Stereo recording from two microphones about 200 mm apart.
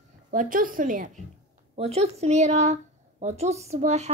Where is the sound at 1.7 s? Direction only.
30° right (ahead or behind).